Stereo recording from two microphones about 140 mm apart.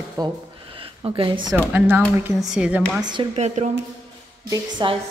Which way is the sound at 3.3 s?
50° right (ahead or behind).